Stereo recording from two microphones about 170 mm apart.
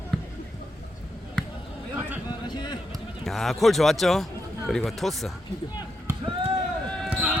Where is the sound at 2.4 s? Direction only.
25° left (ahead or behind).